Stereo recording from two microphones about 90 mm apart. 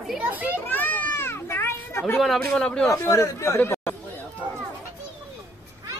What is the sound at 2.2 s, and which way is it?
Speech, 5° left (ahead or behind).